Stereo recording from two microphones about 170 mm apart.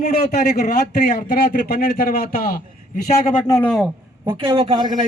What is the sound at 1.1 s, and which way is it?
A man's voice, 55° left (ahead or behind).